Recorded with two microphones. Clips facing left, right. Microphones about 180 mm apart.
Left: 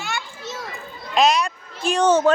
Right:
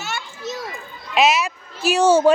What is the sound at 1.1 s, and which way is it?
Speech, 5° right (ahead or behind).